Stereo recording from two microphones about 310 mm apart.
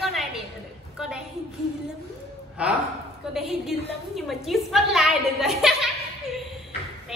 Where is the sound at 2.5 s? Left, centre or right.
Centre.